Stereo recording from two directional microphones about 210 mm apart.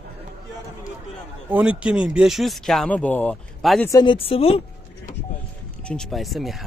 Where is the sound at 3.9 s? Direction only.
20° left (ahead or behind).